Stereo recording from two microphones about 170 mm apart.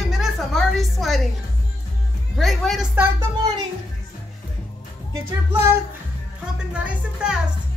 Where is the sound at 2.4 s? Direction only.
Centre (ahead or behind).